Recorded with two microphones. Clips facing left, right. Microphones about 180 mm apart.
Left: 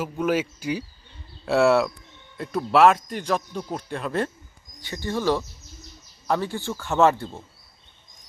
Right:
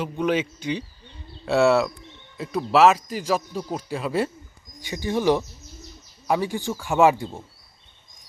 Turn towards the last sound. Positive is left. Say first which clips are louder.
# right 1 dB
turn(degrees=-10)  # may be behind; listen again after turning